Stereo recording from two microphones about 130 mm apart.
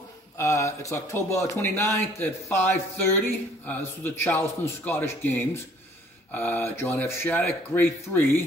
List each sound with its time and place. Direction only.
0.4 s speech: 25° left (ahead or behind)